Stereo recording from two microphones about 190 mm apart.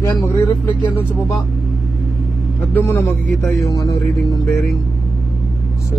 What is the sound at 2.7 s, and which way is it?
A man's voice, 10° left (ahead or behind).